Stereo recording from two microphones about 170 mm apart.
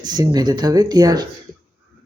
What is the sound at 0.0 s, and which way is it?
Speech, 25° right (ahead or behind).